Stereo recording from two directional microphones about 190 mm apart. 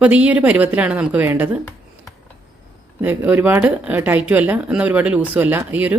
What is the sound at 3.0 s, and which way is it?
Speech, 10° right (ahead or behind).